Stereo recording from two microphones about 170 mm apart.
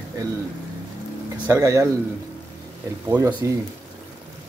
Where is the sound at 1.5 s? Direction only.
15° right (ahead or behind).